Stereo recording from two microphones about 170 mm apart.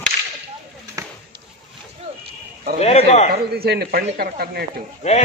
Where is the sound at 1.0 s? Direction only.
20° right (ahead or behind).